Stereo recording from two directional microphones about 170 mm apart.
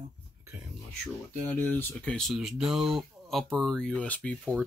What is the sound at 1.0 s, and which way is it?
Speech, 10° left (ahead or behind).